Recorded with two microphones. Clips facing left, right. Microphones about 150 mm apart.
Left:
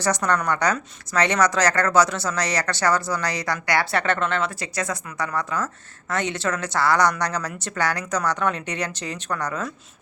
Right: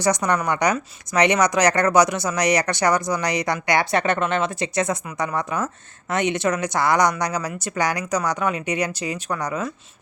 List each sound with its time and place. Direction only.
0.0 s a woman's voice: 15° right (ahead or behind)